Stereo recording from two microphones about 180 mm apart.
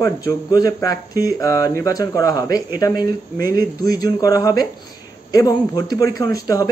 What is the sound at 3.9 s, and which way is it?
Speech, 20° left (ahead or behind).